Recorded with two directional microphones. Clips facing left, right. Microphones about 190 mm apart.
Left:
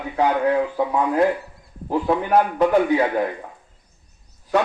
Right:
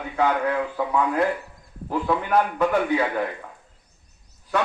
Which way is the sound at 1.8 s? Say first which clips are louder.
Left 3 dB; 35° left (ahead or behind).